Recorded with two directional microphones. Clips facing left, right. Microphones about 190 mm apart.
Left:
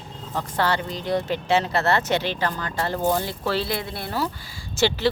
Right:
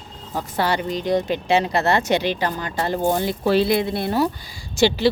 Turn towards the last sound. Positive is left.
turn(degrees=-15)  # may be behind; listen again after turning